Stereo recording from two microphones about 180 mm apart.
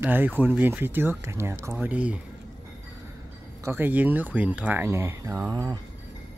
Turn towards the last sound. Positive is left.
turn(degrees=-20)  # may be behind; listen again after turning